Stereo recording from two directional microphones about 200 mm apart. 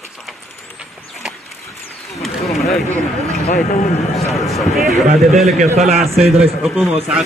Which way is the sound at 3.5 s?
40° left (ahead or behind).